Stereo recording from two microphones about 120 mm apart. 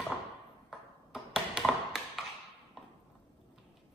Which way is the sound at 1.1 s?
5° right (ahead or behind).